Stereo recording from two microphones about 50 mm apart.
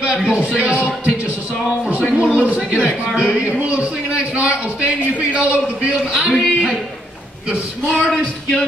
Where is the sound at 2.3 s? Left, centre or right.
Right.